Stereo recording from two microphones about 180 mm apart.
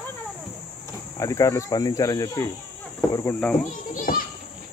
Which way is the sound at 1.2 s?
15° left (ahead or behind).